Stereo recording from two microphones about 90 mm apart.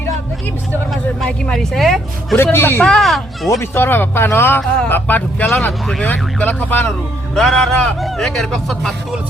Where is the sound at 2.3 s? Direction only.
25° left (ahead or behind).